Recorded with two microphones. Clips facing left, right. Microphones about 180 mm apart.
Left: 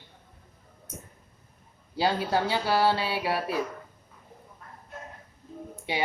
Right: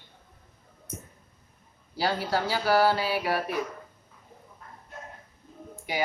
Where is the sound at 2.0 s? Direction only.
25° left (ahead or behind).